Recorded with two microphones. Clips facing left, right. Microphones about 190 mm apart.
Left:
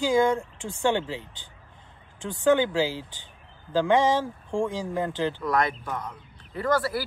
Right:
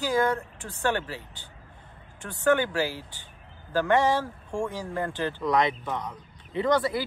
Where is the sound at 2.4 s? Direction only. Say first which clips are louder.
Left 2 dB; 15° left (ahead or behind).